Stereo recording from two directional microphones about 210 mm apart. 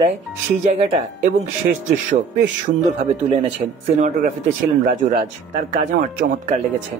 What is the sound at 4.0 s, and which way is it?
Speech, 35° right (ahead or behind).